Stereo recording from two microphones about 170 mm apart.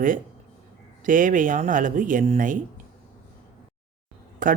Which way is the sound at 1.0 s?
50° right (ahead or behind).